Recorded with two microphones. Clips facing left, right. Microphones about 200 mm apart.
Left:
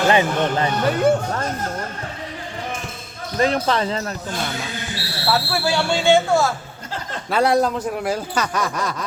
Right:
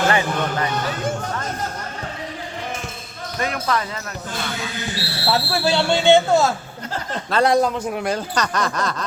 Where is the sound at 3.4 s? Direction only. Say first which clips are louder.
Left 5 dB; 30° left (ahead or behind).